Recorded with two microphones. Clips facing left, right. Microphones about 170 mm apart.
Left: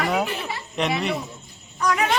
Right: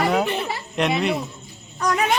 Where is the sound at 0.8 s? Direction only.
Centre (ahead or behind).